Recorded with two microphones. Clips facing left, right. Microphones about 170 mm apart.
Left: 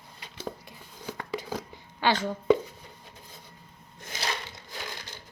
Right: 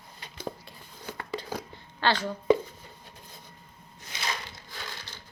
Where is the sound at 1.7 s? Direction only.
10° left (ahead or behind).